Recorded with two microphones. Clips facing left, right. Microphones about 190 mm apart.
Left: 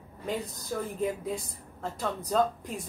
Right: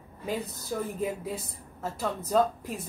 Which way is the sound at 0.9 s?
5° right (ahead or behind).